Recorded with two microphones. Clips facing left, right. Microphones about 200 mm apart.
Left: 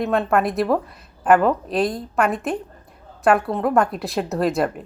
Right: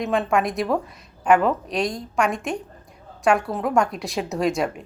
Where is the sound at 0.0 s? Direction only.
Centre (ahead or behind).